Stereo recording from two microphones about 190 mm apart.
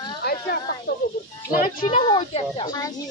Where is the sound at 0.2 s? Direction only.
55° left (ahead or behind).